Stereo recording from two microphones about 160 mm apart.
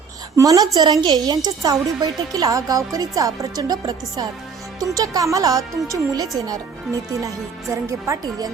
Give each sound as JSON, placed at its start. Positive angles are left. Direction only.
{"t": 0.3, "sound": "speech", "side_deg": -20}